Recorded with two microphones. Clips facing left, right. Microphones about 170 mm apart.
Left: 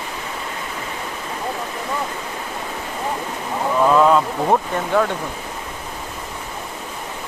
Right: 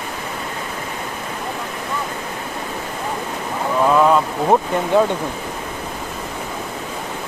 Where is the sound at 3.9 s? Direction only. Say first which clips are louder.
Even; 5° right (ahead or behind).